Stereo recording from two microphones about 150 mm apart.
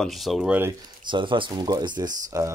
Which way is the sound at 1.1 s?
35° right (ahead or behind).